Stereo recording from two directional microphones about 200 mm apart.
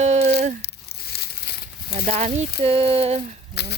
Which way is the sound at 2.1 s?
35° right (ahead or behind).